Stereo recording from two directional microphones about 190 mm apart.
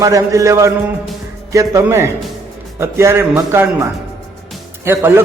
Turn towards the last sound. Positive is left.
turn(degrees=-10)  # may be behind; listen again after turning